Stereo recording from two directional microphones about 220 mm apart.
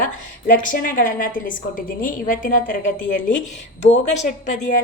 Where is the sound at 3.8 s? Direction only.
30° left (ahead or behind).